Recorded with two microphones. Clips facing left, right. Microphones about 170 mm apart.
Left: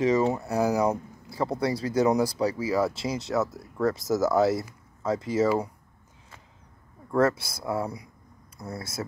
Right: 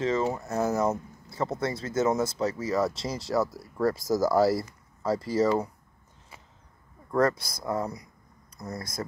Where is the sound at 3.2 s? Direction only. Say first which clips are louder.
Right 2 dB; centre (ahead or behind).